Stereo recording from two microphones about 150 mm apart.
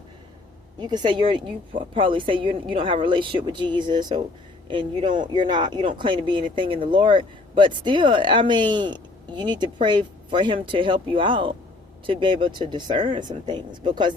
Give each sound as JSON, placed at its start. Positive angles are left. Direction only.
{"t": 0.8, "sound": "speech", "side_deg": -30}